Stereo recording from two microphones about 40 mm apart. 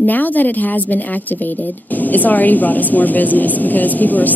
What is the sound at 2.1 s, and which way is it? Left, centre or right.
A woman's voice, left.